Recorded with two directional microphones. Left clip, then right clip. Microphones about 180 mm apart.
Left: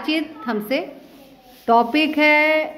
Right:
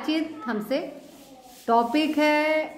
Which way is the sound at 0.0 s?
5° left (ahead or behind).